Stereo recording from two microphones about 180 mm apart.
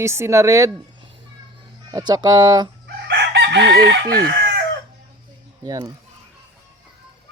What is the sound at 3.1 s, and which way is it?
Chicken, 70° right (ahead or behind).